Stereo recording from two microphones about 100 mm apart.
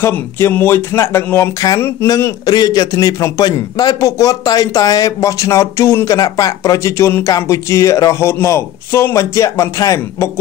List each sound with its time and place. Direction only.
0.0 s speech: 20° left (ahead or behind)